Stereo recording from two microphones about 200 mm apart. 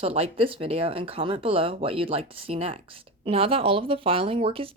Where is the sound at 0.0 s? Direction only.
30° right (ahead or behind).